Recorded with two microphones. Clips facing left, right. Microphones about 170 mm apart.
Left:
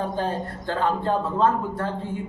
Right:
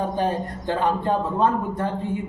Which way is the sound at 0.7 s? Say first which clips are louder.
Right 1 dB; 15° right (ahead or behind).